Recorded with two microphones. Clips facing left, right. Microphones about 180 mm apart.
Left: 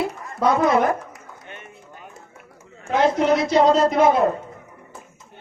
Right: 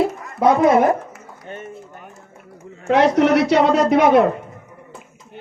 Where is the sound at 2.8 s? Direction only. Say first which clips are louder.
Right 4 dB; 70° right (ahead or behind).